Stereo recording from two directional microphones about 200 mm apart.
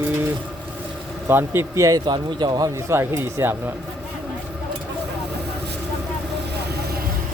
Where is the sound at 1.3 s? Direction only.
10° right (ahead or behind).